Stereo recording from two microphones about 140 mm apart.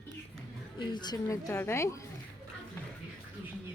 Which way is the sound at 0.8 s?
30° left (ahead or behind).